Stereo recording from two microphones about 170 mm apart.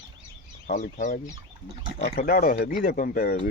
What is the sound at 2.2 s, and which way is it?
Speech, 55° left (ahead or behind).